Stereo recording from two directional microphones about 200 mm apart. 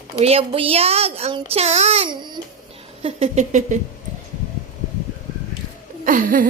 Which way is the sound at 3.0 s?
35° right (ahead or behind).